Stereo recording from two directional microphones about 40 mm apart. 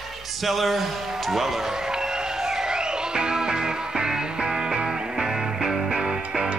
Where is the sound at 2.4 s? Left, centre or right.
Centre.